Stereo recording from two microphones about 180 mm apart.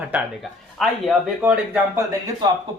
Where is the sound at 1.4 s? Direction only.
15° right (ahead or behind).